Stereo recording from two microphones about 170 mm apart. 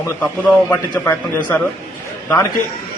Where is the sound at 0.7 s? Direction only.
10° left (ahead or behind).